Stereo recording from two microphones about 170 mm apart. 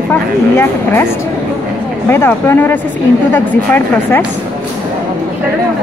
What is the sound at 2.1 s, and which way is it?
Speech, 15° left (ahead or behind).